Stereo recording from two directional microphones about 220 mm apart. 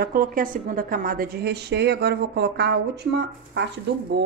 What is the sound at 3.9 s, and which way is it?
Speech, 50° right (ahead or behind).